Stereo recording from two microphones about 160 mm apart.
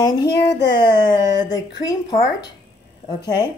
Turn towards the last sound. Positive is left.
turn(degrees=25)  # may be behind; listen again after turning